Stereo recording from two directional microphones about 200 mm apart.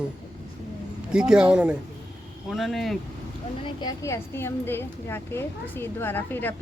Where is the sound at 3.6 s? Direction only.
20° left (ahead or behind).